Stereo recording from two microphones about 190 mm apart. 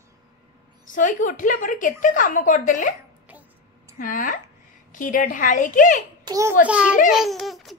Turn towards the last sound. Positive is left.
turn(degrees=0)  # may be behind; listen again after turning